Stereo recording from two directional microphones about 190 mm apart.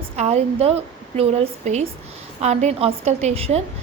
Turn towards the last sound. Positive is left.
turn(degrees=-35)  # may be behind; listen again after turning